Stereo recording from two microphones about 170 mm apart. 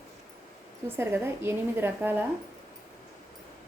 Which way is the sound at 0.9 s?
15° right (ahead or behind).